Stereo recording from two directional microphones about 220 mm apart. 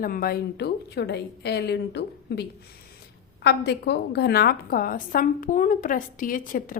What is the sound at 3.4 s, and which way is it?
A woman's voice, 50° left (ahead or behind).